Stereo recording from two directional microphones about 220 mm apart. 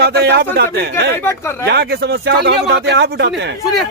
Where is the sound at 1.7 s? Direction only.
50° right (ahead or behind).